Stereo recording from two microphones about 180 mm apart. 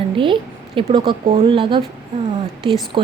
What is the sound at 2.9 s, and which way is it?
Speech, 25° right (ahead or behind).